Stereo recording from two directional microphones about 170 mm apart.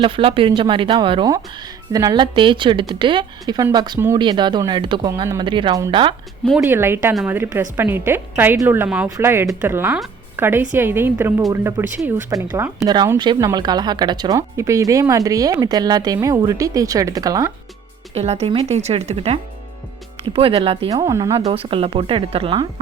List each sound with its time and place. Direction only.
0.0 s speech: 30° right (ahead or behind)
6.6 s a woman's voice: 15° right (ahead or behind)
18.1 s a woman's voice: 40° right (ahead or behind)
20.9 s speech: 20° right (ahead or behind)
21.3 s a woman's voice: 35° right (ahead or behind)